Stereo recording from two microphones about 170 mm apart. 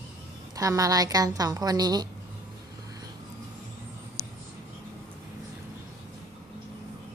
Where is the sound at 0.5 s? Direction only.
20° right (ahead or behind).